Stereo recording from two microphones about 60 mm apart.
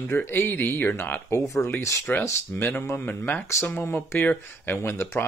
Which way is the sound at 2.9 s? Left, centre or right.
Left.